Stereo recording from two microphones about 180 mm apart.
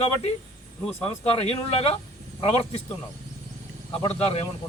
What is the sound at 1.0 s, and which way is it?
Speech, 30° left (ahead or behind).